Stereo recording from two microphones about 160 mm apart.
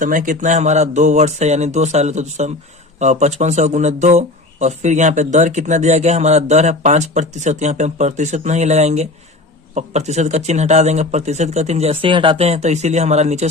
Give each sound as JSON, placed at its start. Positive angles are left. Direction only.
{"t": 0.0, "sound": "speech", "side_deg": -55}